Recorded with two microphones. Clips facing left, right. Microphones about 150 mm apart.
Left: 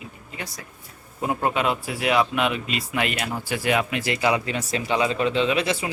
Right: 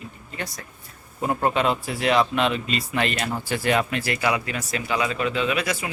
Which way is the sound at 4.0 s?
20° left (ahead or behind).